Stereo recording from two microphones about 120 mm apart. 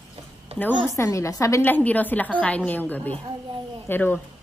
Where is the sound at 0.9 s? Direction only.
25° left (ahead or behind).